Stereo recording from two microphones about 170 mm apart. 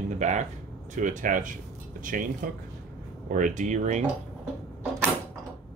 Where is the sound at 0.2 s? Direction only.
45° right (ahead or behind).